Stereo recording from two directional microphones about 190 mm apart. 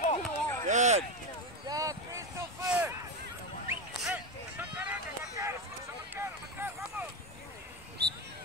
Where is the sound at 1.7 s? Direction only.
15° right (ahead or behind).